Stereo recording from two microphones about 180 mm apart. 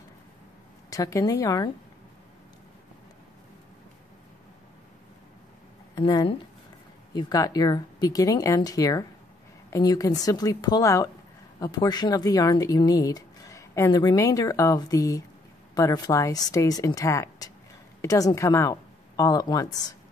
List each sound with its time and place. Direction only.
0.8 s speech: 20° left (ahead or behind)
5.9 s a woman's voice: 25° left (ahead or behind)